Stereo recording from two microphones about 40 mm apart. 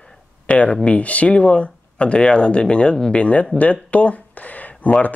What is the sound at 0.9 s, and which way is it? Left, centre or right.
Speech, left.